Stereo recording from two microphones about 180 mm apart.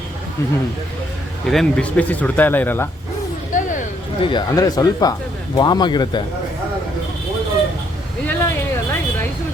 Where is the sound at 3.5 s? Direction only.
45° left (ahead or behind).